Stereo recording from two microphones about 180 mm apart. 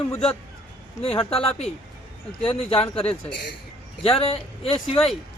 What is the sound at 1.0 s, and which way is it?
Speech, 30° left (ahead or behind).